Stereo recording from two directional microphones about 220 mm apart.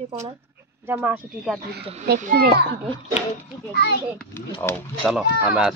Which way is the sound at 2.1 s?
45° right (ahead or behind).